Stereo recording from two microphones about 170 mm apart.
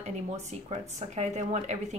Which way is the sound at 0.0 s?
40° right (ahead or behind).